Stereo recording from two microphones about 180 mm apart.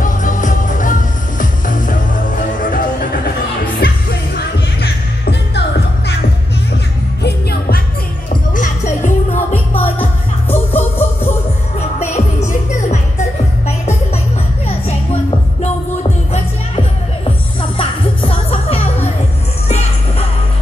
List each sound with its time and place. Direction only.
0.0 s music: 45° left (ahead or behind); by 5.6 s 65° left (ahead or behind)
8.5 s music: 45° left (ahead or behind)
9.5 s music: 10° left (ahead or behind)
12.0 s music: 40° left (ahead or behind)
17.6 s music: 30° left (ahead or behind)